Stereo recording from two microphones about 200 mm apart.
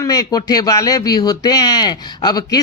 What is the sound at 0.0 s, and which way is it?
Speech, 20° left (ahead or behind).